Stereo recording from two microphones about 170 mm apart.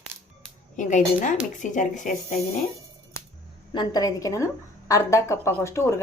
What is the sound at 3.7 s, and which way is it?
A woman's voice, 25° left (ahead or behind).